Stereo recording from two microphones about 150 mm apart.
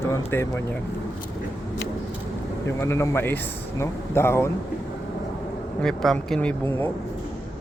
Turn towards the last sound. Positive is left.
turn(degrees=10)  # may be behind; listen again after turning